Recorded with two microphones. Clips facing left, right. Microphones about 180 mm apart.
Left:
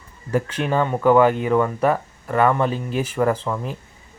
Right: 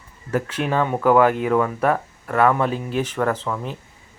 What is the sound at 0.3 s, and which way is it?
Speech, 5° right (ahead or behind).